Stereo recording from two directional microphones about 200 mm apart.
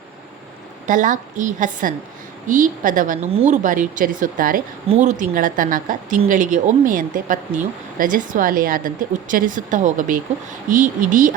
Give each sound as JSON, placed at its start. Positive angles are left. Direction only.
{"t": 0.9, "sound": "speech", "side_deg": -40}